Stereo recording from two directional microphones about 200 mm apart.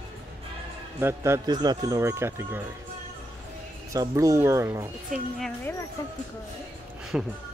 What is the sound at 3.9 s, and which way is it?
Speech, 15° right (ahead or behind).